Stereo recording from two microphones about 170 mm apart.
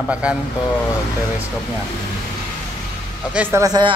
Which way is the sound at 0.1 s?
5° right (ahead or behind).